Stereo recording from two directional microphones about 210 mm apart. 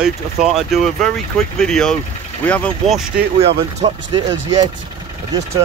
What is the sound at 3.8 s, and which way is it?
Speech, 25° right (ahead or behind).